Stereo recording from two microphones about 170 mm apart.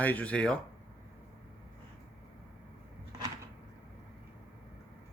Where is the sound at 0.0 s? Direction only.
10° left (ahead or behind).